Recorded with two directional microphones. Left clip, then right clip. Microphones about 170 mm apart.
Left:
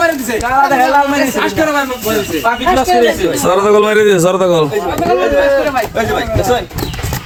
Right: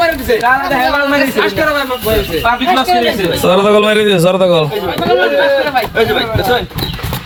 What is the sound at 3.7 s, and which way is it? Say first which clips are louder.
Speech: left 1 dB; 20° left (ahead or behind).